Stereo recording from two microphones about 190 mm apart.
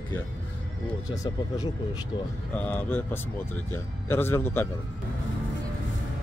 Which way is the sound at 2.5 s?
10° left (ahead or behind).